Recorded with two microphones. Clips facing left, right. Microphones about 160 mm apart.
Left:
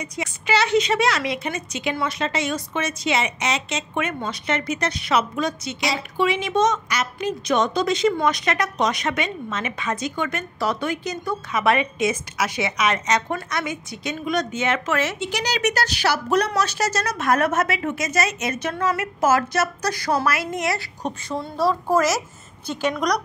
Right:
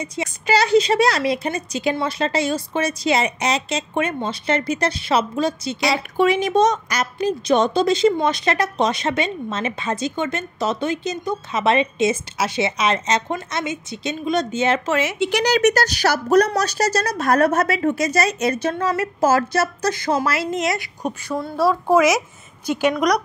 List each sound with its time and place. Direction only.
0.0 s a woman's voice: 30° right (ahead or behind)
5.9 s a woman's voice: 45° right (ahead or behind); by 15.0 s 30° right (ahead or behind)
15.1 s a woman's voice: 60° right (ahead or behind); by 21.1 s 15° right (ahead or behind)
21.4 s a woman's voice: 5° right (ahead or behind)